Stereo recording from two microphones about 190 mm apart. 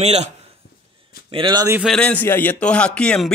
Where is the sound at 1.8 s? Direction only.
5° left (ahead or behind).